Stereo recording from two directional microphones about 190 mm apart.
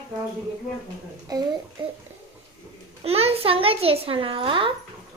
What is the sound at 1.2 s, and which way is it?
Speech, 20° right (ahead or behind).